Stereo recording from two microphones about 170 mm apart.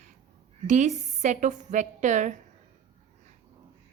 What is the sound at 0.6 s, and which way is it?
A woman's voice, 45° right (ahead or behind).